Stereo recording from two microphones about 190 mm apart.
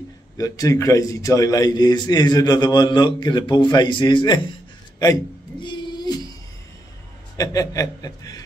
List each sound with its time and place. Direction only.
0.4 s a man's voice: 15° left (ahead or behind)
5.6 s a sound: 20° left (ahead or behind)
7.3 s a man's voice: 20° left (ahead or behind)